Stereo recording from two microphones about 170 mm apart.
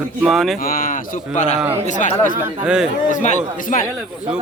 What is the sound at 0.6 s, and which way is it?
Speech, 55° left (ahead or behind).